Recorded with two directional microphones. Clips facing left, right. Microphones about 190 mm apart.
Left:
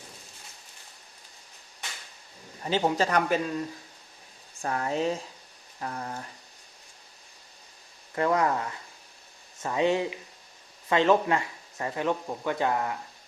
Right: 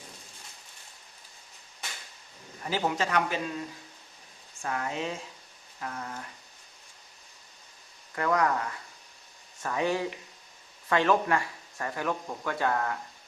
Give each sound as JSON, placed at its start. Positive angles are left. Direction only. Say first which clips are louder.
{"t": 2.6, "sound": "speech", "louder": "left 4 dB", "side_deg": 25}
{"t": 3.0, "sound": "speech", "louder": "left 4 dB", "side_deg": 45}
{"t": 4.6, "sound": "speech", "louder": "left 5 dB", "side_deg": 35}
{"t": 8.1, "sound": "speech", "louder": "left 2 dB", "side_deg": 25}